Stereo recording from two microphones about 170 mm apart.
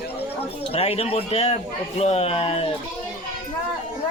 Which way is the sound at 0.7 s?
35° left (ahead or behind).